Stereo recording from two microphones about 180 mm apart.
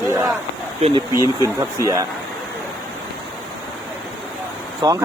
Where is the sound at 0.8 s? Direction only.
25° right (ahead or behind).